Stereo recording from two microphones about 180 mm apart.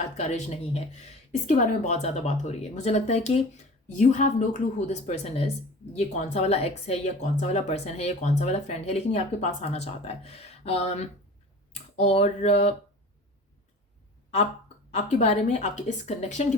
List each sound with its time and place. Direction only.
0.2 s speech: 40° left (ahead or behind)
14.8 s speech: 40° left (ahead or behind)